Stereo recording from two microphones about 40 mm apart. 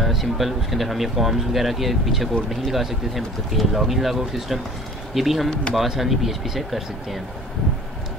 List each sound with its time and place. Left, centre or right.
0.0 s speech: centre
5.5 s speech: left
5.8 s speech: centre